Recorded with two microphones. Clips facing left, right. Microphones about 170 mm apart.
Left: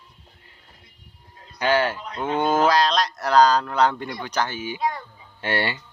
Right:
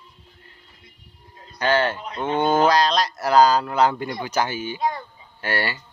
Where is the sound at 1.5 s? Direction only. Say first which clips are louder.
Even; 10° left (ahead or behind); by 4.6 s 10° right (ahead or behind).